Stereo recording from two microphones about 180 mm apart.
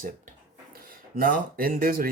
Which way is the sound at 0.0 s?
50° right (ahead or behind).